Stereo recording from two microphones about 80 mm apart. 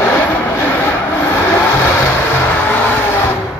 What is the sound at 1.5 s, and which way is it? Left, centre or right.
Vehicle, left.